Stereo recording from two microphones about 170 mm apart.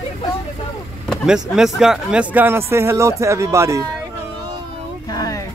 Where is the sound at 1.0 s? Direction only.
Centre (ahead or behind); by 3.8 s 20° right (ahead or behind).